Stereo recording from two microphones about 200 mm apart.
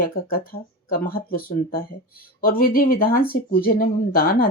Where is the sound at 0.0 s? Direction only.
45° left (ahead or behind).